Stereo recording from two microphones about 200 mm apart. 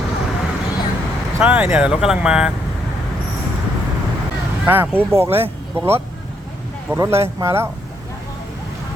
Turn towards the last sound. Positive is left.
turn(degrees=-15)  # may be behind; listen again after turning